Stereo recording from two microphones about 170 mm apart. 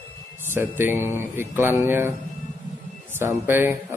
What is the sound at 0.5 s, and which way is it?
A man's voice, 10° right (ahead or behind).